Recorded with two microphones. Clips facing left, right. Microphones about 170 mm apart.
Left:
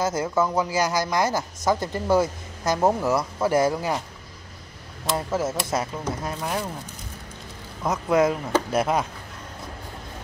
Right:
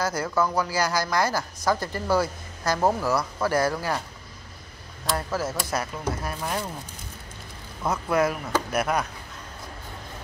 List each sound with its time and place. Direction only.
0.0 s a woman's voice: 20° left (ahead or behind)
5.1 s a woman's voice: 25° left (ahead or behind)
6.4 s speech: 5° left (ahead or behind)
7.8 s a woman's voice: 20° left (ahead or behind)